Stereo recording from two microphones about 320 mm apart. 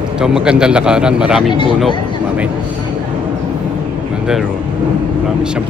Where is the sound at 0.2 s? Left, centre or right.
Centre.